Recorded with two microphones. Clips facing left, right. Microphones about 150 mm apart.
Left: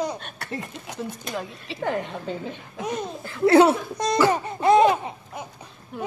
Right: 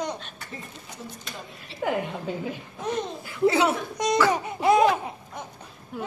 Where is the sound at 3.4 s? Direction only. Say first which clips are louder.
Left 6 dB; 60° left (ahead or behind).